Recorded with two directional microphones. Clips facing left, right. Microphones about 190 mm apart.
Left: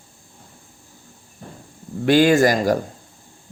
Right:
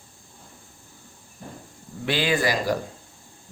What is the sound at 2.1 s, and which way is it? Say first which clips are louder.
Speech: left 9 dB; 45° left (ahead or behind).